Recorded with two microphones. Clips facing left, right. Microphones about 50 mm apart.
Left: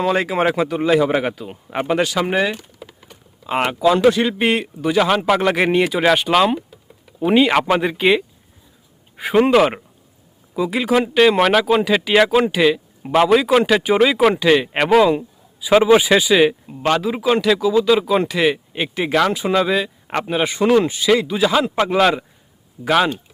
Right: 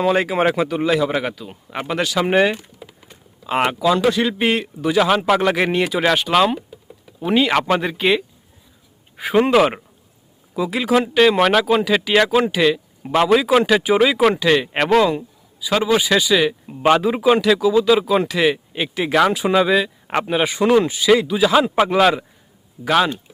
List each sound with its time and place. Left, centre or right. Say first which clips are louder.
0.0 s speech: right 1 dB; centre
0.9 s a man's voice: left 3 dB; centre
2.2 s speech: right 3 dB; centre
3.0 s typing: even; centre
4.0 s speech: left 2 dB; centre
15.6 s speech: left 5 dB; left
16.6 s speech: right 3 dB; centre
19.1 s speech: right 2 dB; centre